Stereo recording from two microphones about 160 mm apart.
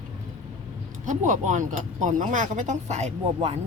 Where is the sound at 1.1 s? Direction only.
50° right (ahead or behind).